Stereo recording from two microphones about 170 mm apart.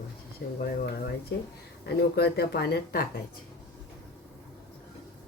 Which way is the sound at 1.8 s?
75° left (ahead or behind).